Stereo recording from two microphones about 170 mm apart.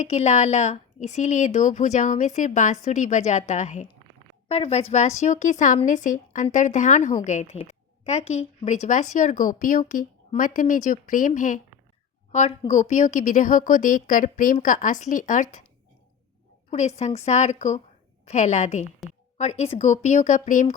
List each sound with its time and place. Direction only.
0.0 s a woman's voice: 40° left (ahead or behind)
16.6 s a woman's voice: 40° left (ahead or behind)